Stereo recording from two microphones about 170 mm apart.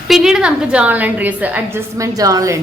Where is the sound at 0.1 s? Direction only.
5° right (ahead or behind).